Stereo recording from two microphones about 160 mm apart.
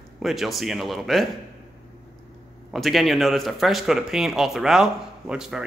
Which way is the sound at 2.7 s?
Centre (ahead or behind).